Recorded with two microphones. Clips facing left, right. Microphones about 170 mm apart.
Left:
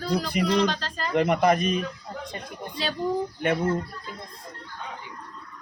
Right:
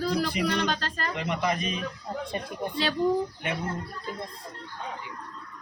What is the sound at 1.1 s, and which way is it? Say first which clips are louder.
Speech: left 10 dB; 50° left (ahead or behind).